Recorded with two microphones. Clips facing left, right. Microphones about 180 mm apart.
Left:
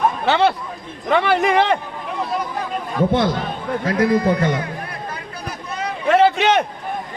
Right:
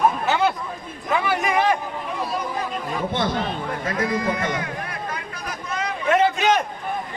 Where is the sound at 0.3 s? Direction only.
70° left (ahead or behind).